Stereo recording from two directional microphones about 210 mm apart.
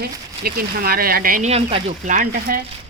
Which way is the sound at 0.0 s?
45° right (ahead or behind).